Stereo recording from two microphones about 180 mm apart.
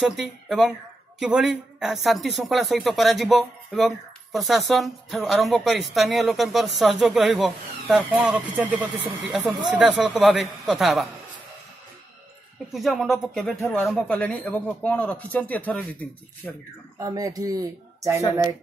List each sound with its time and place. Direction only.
0.0 s speech: centre (ahead or behind)
12.7 s speech: centre (ahead or behind)
17.0 s speech: 20° right (ahead or behind)